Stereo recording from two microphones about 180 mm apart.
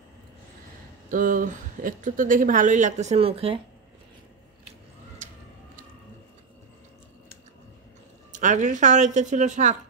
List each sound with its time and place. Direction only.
1.1 s speech: 50° right (ahead or behind); by 3.5 s 30° right (ahead or behind)
8.3 s speech: 45° right (ahead or behind)